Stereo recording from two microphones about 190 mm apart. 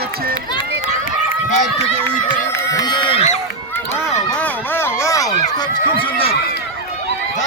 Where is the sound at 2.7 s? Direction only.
20° left (ahead or behind).